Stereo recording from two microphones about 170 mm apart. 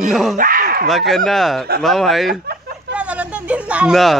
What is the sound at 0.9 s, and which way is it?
Speech, centre (ahead or behind).